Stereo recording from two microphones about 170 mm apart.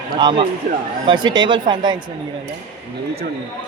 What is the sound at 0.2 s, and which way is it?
Speech, 25° right (ahead or behind).